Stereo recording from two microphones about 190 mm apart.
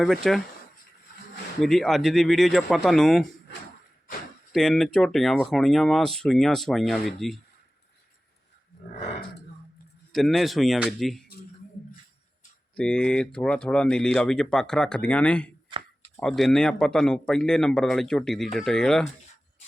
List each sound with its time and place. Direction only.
0.0 s speech: centre (ahead or behind)
1.6 s speech: centre (ahead or behind)
4.5 s speech: centre (ahead or behind)
10.1 s speech: centre (ahead or behind)
12.7 s speech: 5° left (ahead or behind)
15.7 s a sound: 25° right (ahead or behind)
16.1 s speech: centre (ahead or behind)